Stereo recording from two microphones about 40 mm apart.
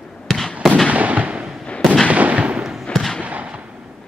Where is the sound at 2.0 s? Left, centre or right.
Right.